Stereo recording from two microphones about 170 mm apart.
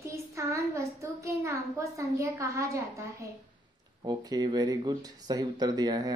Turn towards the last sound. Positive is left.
turn(degrees=-25)  # may be behind; listen again after turning